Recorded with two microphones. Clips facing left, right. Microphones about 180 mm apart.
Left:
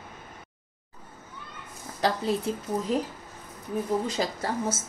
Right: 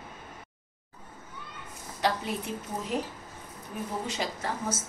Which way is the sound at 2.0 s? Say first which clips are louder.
Left 3 dB; 35° left (ahead or behind).